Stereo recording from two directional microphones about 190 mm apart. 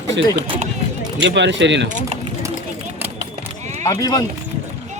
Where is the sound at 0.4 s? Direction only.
30° right (ahead or behind).